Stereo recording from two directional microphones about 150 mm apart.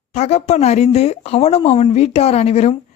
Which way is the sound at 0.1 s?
45° left (ahead or behind).